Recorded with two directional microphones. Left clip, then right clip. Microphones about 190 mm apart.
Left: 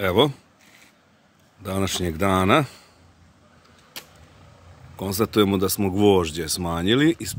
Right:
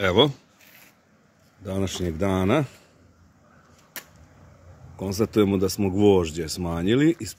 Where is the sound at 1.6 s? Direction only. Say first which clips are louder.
Left 3 dB; 10° left (ahead or behind).